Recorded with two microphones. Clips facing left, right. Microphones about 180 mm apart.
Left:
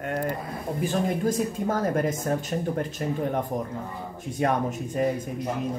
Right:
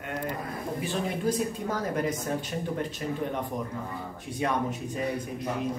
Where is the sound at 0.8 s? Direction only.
45° left (ahead or behind).